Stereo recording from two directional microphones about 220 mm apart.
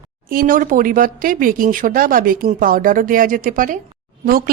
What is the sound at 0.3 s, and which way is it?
Speech, 40° right (ahead or behind).